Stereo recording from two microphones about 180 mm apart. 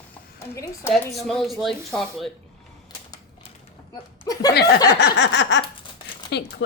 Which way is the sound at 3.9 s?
20° left (ahead or behind).